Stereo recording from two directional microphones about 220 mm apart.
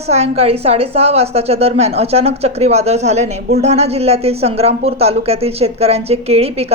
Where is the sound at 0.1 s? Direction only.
30° right (ahead or behind).